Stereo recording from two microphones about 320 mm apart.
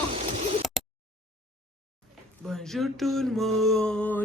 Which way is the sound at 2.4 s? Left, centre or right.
Centre.